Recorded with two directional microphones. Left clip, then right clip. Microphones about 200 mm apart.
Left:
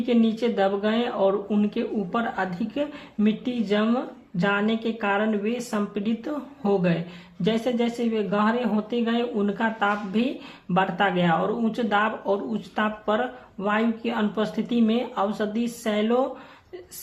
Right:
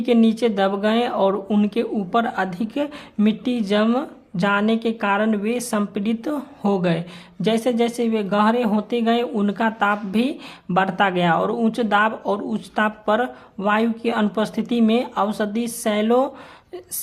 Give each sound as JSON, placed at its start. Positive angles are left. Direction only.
{"t": 0.0, "sound": "speech", "side_deg": -40}